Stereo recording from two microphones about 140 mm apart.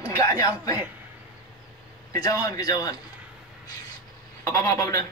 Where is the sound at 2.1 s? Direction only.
25° left (ahead or behind).